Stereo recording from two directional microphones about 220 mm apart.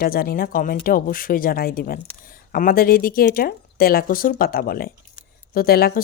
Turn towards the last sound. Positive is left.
turn(degrees=45)  # may be behind; listen again after turning